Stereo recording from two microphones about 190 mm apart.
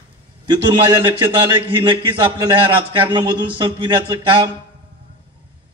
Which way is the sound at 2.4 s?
25° right (ahead or behind).